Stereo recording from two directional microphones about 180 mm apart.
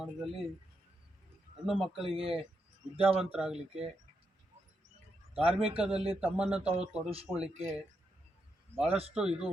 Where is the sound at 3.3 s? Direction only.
5° right (ahead or behind).